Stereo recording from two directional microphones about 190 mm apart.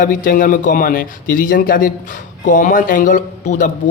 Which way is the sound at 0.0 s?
45° left (ahead or behind).